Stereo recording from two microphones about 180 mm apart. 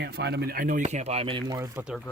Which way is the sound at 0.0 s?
65° right (ahead or behind).